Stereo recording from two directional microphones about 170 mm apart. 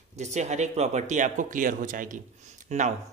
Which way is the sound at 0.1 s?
45° right (ahead or behind).